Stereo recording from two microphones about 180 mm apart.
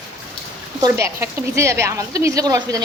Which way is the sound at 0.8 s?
20° right (ahead or behind).